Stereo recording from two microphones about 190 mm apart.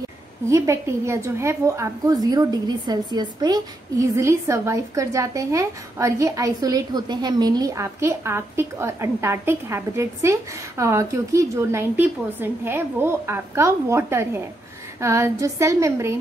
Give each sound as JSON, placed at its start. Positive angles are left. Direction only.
{"t": 0.5, "sound": "a woman's voice", "side_deg": -15}